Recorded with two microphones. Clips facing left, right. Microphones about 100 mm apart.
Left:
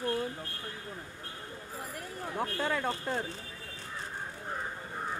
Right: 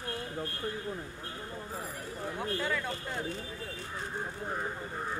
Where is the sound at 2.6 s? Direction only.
40° left (ahead or behind).